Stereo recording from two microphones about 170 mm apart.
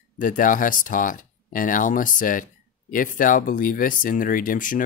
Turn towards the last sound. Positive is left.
turn(degrees=50)  # may be behind; listen again after turning